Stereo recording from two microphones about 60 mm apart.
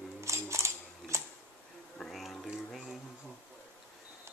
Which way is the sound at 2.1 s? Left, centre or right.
Centre.